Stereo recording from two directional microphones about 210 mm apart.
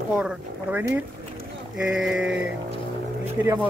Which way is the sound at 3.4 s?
10° right (ahead or behind).